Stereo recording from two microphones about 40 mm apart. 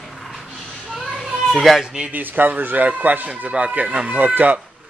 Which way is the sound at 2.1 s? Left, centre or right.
Right.